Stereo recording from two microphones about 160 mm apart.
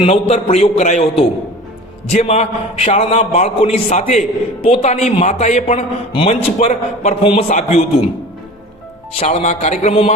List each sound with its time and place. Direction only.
0.0 s a man's voice: 35° left (ahead or behind)
7.4 s a man's voice: 50° left (ahead or behind)
9.1 s a man's voice: 40° left (ahead or behind)